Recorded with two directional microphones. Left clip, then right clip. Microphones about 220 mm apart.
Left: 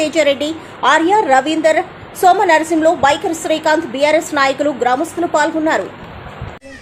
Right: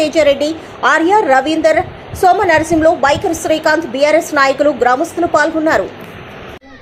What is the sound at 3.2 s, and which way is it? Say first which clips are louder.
Speech: right 3 dB; 20° left (ahead or behind).